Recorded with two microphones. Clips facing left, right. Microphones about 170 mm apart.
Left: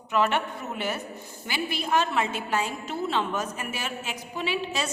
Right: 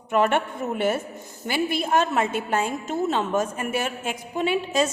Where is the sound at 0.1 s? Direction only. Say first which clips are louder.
Right 4 dB; 50° right (ahead or behind).